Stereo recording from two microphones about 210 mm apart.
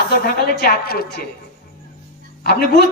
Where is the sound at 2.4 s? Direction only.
50° left (ahead or behind).